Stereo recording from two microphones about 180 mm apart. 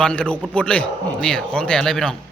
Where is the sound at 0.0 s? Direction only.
5° left (ahead or behind).